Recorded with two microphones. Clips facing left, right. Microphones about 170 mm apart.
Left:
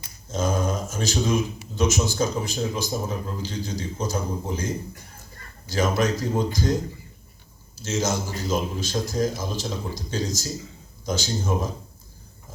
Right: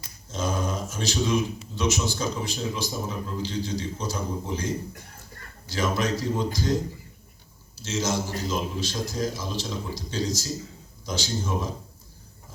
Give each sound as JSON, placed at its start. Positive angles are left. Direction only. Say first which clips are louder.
{"t": 0.3, "sound": "a man's voice", "louder": "left 4 dB", "side_deg": 45}
{"t": 7.8, "sound": "a man's voice", "louder": "left 2 dB", "side_deg": 50}